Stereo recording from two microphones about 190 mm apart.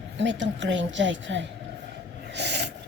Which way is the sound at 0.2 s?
70° right (ahead or behind).